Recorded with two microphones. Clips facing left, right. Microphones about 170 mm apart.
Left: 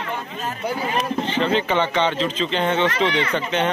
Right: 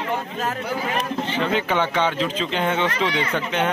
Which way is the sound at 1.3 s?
10° right (ahead or behind).